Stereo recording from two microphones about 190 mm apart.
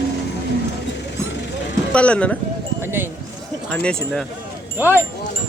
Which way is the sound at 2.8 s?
10° right (ahead or behind).